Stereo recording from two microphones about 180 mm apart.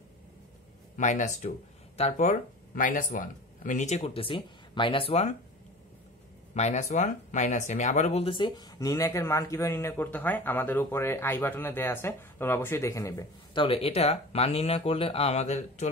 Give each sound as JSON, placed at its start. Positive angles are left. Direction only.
{"t": 0.9, "sound": "speech", "side_deg": 40}
{"t": 6.5, "sound": "speech", "side_deg": 40}
{"t": 13.7, "sound": "speech", "side_deg": 30}